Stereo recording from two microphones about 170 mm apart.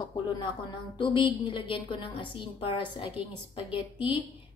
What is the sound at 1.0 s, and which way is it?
A woman's voice, 30° left (ahead or behind).